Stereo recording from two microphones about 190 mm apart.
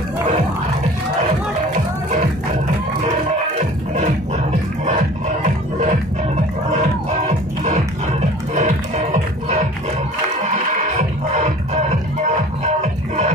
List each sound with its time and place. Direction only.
5.4 s music: 40° right (ahead or behind)
12.8 s music: 35° right (ahead or behind)